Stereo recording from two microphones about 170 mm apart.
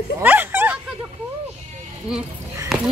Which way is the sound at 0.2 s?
10° right (ahead or behind).